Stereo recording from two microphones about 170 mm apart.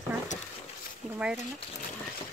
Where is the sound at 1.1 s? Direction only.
10° right (ahead or behind).